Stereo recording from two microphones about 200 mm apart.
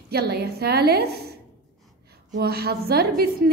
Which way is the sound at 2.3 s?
50° right (ahead or behind).